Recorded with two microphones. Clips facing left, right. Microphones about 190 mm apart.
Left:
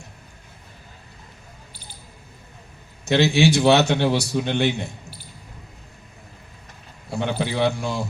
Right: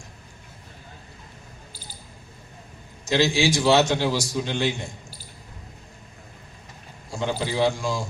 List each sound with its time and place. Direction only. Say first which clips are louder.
3.1 s a man's voice: left 4 dB; 65° left (ahead or behind)
7.1 s a man's voice: left 2 dB; 60° left (ahead or behind)